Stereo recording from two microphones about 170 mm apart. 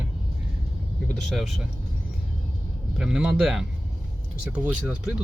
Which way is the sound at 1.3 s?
Centre (ahead or behind).